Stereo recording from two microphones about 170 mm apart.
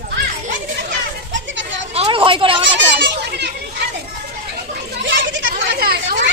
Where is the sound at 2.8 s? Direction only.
90° right.